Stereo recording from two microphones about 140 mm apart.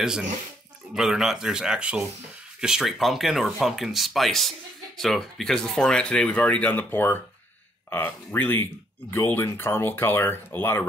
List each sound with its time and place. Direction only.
0.0 s speech: 5° right (ahead or behind); by 10.9 s 15° left (ahead or behind)